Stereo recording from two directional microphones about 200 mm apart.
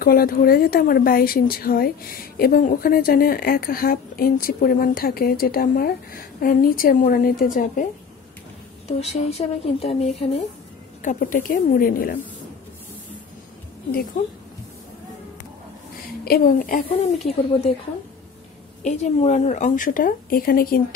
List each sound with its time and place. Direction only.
0.0 s speech: 50° left (ahead or behind)
9.0 s speech: 30° left (ahead or behind)
16.3 s speech: 45° left (ahead or behind)
18.9 s speech: 35° left (ahead or behind)